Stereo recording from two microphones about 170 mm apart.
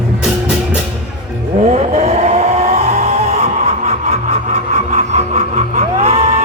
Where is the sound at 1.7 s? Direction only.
40° right (ahead or behind).